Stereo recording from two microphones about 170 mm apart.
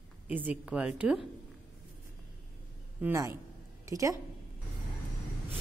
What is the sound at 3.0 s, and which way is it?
A woman's voice, 15° right (ahead or behind).